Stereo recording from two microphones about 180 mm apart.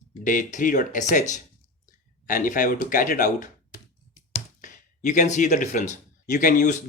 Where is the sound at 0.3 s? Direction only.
45° left (ahead or behind).